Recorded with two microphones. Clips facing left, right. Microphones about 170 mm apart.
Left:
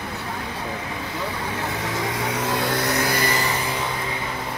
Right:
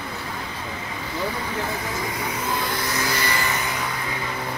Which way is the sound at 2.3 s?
75° left (ahead or behind).